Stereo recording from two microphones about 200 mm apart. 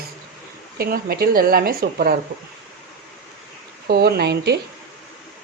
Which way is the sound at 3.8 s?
50° right (ahead or behind).